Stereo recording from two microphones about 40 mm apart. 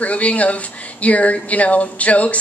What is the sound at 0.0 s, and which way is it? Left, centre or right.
A woman's voice, left.